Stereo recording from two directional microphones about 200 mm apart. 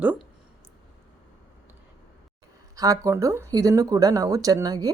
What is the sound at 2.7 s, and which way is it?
Speech, 15° right (ahead or behind).